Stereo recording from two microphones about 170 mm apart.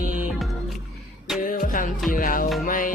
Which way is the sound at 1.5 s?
50° left (ahead or behind).